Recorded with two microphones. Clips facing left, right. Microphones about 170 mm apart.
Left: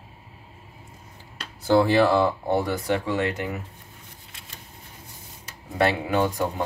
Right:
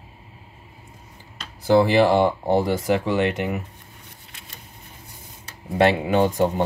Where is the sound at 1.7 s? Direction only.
15° right (ahead or behind).